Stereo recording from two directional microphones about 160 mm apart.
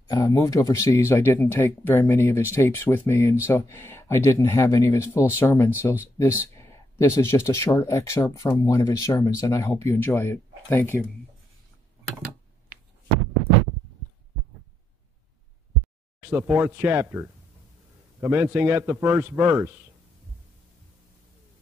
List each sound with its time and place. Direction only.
0.1 s speech: 20° left (ahead or behind)
16.2 s a man's voice: 10° right (ahead or behind)